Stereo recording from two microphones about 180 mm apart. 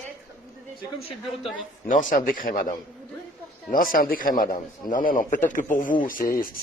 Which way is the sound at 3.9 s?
50° left (ahead or behind).